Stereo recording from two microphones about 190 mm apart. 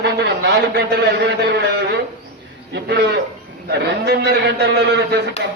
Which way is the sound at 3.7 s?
60° right (ahead or behind).